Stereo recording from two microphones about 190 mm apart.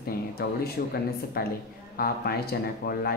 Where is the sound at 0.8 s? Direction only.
55° left (ahead or behind).